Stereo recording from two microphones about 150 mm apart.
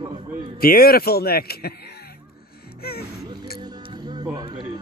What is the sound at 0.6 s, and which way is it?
Speech, 80° left.